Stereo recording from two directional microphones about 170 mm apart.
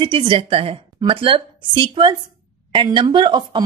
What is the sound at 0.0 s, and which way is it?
A woman's voice, 30° right (ahead or behind).